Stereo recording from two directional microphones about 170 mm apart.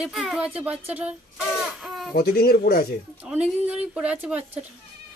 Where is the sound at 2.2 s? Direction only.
65° left (ahead or behind).